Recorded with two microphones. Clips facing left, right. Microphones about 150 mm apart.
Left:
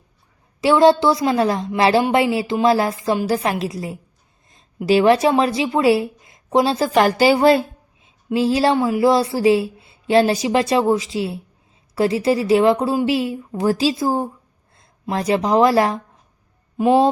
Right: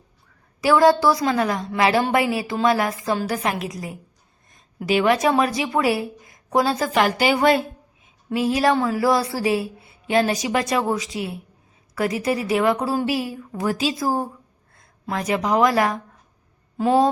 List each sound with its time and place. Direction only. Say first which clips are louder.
0.6 s speech: left 2 dB; 25° left (ahead or behind)
8.0 s a sound: left 4 dB; 30° left (ahead or behind)
8.7 s speech: left 4 dB; 15° left (ahead or behind); by 16.0 s 30° left (ahead or behind)